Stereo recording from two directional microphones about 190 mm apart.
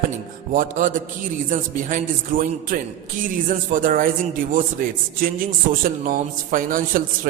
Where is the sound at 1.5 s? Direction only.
45° right (ahead or behind).